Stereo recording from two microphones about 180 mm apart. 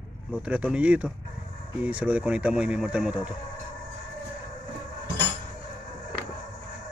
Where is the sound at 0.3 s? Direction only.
10° right (ahead or behind).